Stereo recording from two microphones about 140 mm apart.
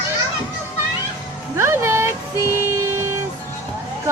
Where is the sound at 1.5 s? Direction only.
20° right (ahead or behind).